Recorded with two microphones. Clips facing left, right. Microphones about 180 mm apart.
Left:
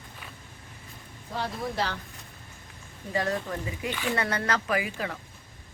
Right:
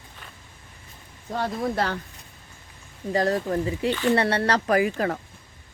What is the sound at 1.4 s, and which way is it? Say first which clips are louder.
Speech: right 5 dB; 50° right (ahead or behind).